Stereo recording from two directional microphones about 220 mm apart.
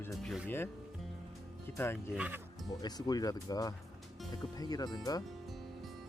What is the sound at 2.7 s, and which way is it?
Speech, 20° left (ahead or behind).